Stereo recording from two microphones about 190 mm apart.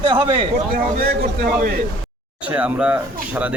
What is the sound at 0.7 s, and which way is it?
A man's voice, 50° right (ahead or behind).